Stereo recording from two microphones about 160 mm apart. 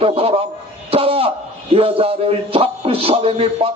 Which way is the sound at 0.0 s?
35° right (ahead or behind).